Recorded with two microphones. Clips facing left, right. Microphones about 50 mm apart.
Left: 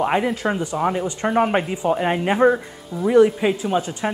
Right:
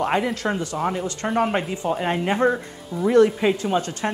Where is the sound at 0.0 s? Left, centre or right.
Centre.